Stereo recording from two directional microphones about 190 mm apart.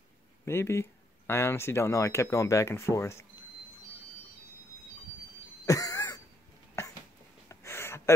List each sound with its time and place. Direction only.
0.5 s speech: 15° left (ahead or behind)
5.7 s cough: 20° left (ahead or behind)
7.4 s a sound: 15° left (ahead or behind)